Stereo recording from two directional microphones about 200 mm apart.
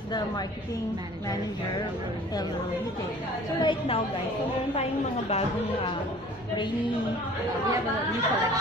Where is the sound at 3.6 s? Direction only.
25° left (ahead or behind).